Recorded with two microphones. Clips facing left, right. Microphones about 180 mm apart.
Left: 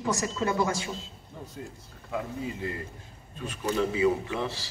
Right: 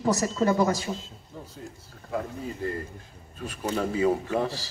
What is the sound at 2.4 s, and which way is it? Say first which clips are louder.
Speech: right 2 dB; 45° right (ahead or behind).